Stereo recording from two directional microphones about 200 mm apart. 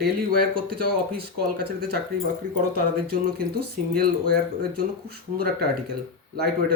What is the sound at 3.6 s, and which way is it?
Speech, 50° right (ahead or behind).